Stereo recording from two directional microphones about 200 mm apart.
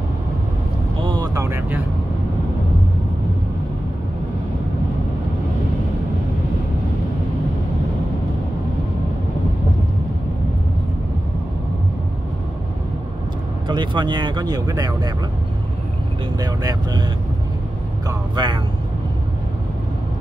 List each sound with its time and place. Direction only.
1.0 s vehicle: 20° right (ahead or behind)
13.7 s speech: 25° right (ahead or behind)
16.3 s speech: 20° right (ahead or behind)
18.0 s speech: 20° right (ahead or behind)